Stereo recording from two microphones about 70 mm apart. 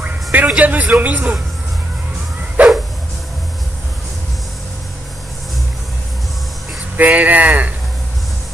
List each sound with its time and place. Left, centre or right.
0.0 s music: right
0.6 s a man's voice: right
2.6 s a sound: right
7.0 s a man's voice: right